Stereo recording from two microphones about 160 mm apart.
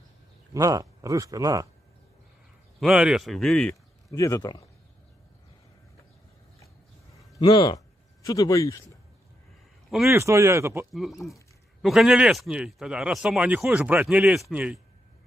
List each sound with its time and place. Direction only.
0.5 s speech: 20° right (ahead or behind)
2.8 s speech: 5° right (ahead or behind)
4.1 s speech: 20° left (ahead or behind)
7.2 s a sound: 25° left (ahead or behind)
10.0 s speech: 15° right (ahead or behind)
10.9 s speech: centre (ahead or behind)